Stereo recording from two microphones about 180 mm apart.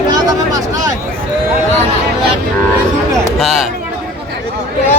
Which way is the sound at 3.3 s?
Centre (ahead or behind).